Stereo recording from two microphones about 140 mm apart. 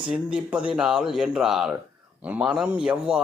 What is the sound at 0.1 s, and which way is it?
A man's voice, 10° right (ahead or behind).